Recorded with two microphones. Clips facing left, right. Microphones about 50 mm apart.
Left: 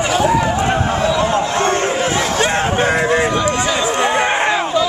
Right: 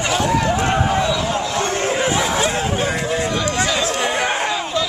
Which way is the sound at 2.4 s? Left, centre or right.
Left.